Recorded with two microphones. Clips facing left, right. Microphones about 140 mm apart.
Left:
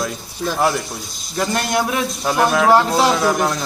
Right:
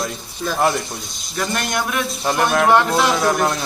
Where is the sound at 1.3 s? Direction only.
25° left (ahead or behind).